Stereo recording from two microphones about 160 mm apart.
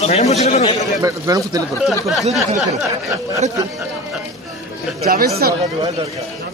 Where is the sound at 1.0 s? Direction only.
20° right (ahead or behind).